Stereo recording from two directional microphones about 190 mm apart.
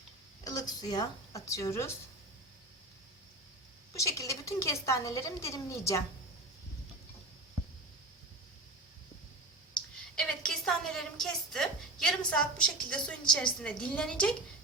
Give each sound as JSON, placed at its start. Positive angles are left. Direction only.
{"t": 0.4, "sound": "speech", "side_deg": 20}
{"t": 3.9, "sound": "a woman's voice", "side_deg": 15}
{"t": 10.2, "sound": "a woman's voice", "side_deg": 5}